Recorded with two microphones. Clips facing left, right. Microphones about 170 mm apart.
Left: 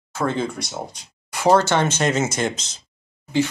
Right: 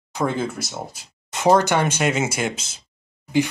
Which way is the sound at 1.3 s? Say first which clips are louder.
Even; 20° right (ahead or behind).